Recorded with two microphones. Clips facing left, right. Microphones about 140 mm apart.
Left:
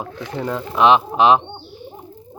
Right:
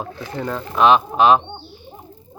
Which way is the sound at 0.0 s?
10° left (ahead or behind).